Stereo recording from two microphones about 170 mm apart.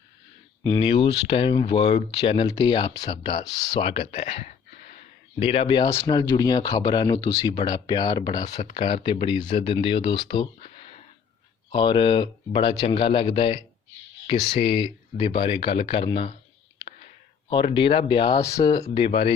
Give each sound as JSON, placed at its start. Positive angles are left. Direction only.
{"t": 0.6, "sound": "speech", "side_deg": 20}
{"t": 0.9, "sound": "speech", "side_deg": 30}
{"t": 16.0, "sound": "clicking", "side_deg": 35}
{"t": 17.5, "sound": "speech", "side_deg": 30}